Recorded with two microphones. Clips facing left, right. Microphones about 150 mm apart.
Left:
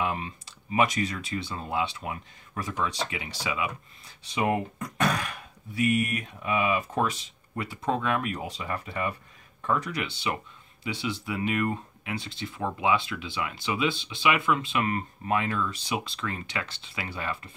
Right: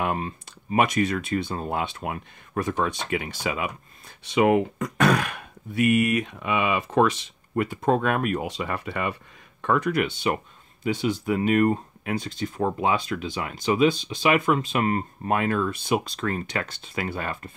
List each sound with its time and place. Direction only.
0.0 s speech: 45° right (ahead or behind)
4.3 s speech: 90° right
7.6 s speech: 50° right (ahead or behind)
15.2 s speech: 50° right (ahead or behind)